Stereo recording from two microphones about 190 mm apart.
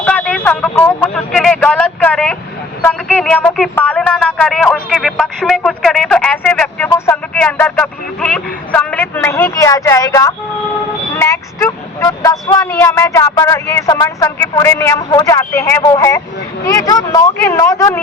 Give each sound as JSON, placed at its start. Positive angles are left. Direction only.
{"t": 0.0, "sound": "speech", "side_deg": 10}